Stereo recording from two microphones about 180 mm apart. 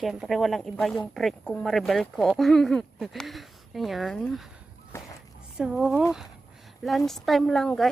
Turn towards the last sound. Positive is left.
turn(degrees=5)  # may be behind; listen again after turning